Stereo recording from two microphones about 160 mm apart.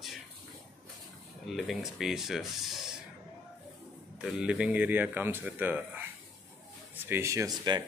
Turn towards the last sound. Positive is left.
turn(degrees=-25)  # may be behind; listen again after turning